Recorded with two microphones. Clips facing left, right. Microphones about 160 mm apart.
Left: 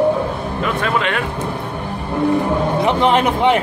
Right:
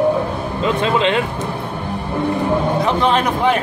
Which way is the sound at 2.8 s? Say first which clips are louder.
Left 2 dB; 20° left (ahead or behind).